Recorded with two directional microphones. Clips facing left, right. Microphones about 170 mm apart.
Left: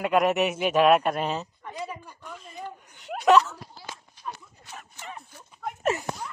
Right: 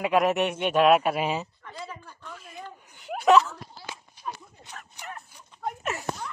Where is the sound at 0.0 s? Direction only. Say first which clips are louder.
Even; centre (ahead or behind).